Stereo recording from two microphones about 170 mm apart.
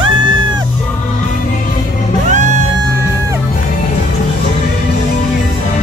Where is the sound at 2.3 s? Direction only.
45° right (ahead or behind).